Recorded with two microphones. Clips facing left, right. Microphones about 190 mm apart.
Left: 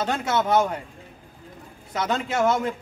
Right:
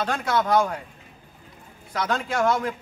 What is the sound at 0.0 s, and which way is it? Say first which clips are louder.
Speech: even; 25° left (ahead or behind).